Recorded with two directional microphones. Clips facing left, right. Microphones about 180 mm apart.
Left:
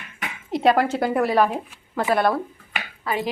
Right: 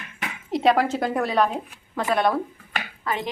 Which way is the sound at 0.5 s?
Centre (ahead or behind).